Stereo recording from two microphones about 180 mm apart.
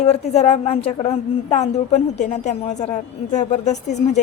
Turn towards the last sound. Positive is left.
turn(degrees=40)  # may be behind; listen again after turning